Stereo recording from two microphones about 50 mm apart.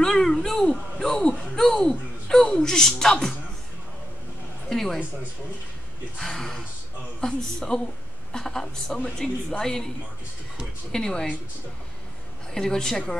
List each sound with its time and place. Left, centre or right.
0.0 s a woman's voice: centre
1.9 s a woman's voice: centre
4.6 s a woman's voice: centre
6.1 s a woman's voice: centre
10.9 s a woman's voice: centre
12.5 s a woman's voice: centre